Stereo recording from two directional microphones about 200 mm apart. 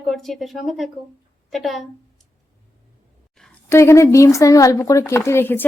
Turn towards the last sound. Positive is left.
turn(degrees=10)  # may be behind; listen again after turning